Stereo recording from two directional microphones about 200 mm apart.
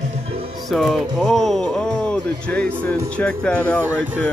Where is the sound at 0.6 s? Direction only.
Centre (ahead or behind).